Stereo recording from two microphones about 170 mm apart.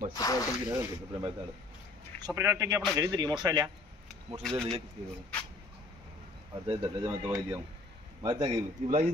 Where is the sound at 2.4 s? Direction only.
15° right (ahead or behind).